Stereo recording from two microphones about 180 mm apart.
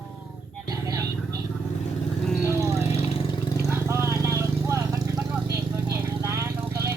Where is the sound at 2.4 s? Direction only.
15° right (ahead or behind).